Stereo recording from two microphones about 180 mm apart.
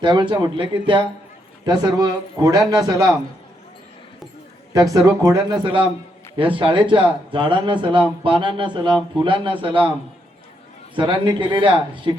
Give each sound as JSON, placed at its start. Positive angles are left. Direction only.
{"t": 0.0, "sound": "speech", "side_deg": -25}
{"t": 4.7, "sound": "speech", "side_deg": -20}
{"t": 10.9, "sound": "speech", "side_deg": -25}